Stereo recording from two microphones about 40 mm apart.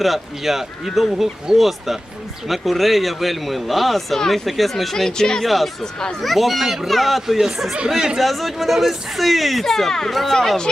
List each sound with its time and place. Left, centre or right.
0.0 s speech: centre
5.4 s speech: centre
5.8 s speech: centre
6.2 s speech: centre
6.6 s speech: centre
6.8 s speech: centre
8.2 s speech: centre